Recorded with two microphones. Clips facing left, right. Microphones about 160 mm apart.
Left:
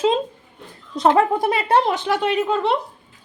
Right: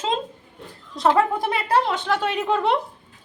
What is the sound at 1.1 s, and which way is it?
Speech, 25° left (ahead or behind).